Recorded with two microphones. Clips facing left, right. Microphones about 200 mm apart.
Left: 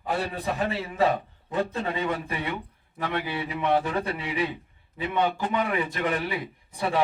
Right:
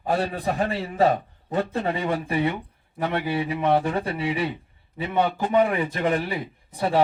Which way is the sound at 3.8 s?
25° right (ahead or behind).